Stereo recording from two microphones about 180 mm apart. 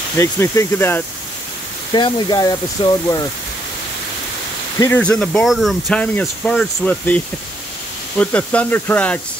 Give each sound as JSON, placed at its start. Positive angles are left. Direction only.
{"t": 0.2, "sound": "speech", "side_deg": 15}
{"t": 2.0, "sound": "speech", "side_deg": 25}
{"t": 4.7, "sound": "speech", "side_deg": 10}
{"t": 8.2, "sound": "speech", "side_deg": 10}